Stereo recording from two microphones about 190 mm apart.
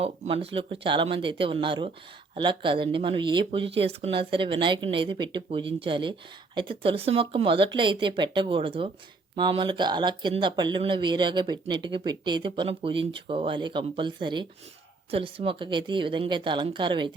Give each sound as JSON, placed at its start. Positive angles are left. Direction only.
{"t": 0.0, "sound": "speech", "side_deg": -30}